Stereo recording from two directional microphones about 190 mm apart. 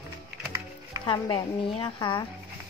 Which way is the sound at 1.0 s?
25° left (ahead or behind).